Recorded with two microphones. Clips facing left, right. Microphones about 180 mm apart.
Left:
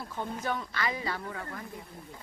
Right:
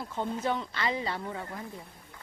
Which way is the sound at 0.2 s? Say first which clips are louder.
Right 3 dB; 25° right (ahead or behind).